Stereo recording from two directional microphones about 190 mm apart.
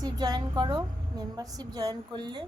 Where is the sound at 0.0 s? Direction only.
20° right (ahead or behind).